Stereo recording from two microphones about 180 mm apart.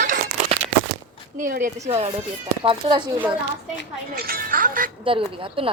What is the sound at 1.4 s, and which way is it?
Music, 45° right (ahead or behind).